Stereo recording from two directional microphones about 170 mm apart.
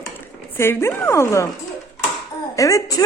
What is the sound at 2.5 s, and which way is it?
Speech, 20° left (ahead or behind).